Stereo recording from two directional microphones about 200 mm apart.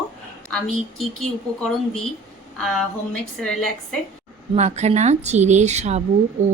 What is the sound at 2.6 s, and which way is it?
Speech, 5° left (ahead or behind).